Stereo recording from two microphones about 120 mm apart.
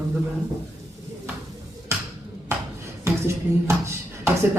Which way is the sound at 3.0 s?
25° right (ahead or behind).